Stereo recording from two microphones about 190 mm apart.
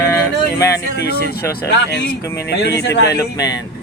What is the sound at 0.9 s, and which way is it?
Speech, 55° left (ahead or behind).